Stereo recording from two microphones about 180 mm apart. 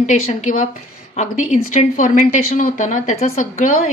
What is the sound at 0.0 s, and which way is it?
Speech, 40° left (ahead or behind).